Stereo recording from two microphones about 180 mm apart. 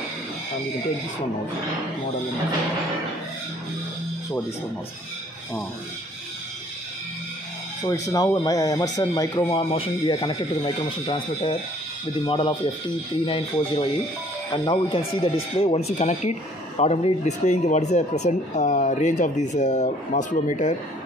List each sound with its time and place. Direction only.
8.1 s speech: 20° left (ahead or behind); by 20.7 s 45° left (ahead or behind)